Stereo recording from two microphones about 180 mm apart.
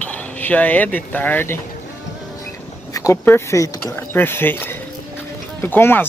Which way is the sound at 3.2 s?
15° left (ahead or behind).